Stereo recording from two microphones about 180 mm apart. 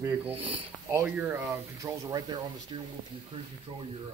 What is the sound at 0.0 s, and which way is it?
Speech, 10° right (ahead or behind).